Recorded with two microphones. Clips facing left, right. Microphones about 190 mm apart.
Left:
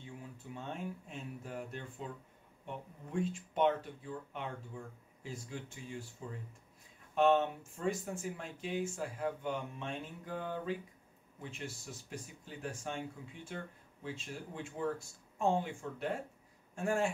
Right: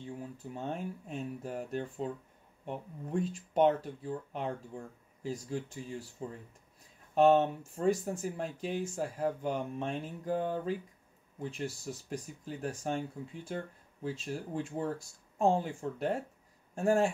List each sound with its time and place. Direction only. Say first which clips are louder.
0.0 s speech: right 7 dB; 40° right (ahead or behind)
7.2 s speech: right 4 dB; 40° right (ahead or behind)